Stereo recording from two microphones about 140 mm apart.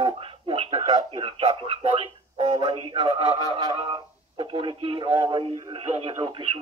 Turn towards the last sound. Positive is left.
turn(degrees=-40)  # may be behind; listen again after turning